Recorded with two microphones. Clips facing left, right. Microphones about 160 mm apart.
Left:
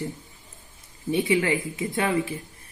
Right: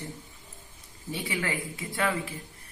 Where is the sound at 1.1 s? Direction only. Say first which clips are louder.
Left 10 dB; 20° left (ahead or behind).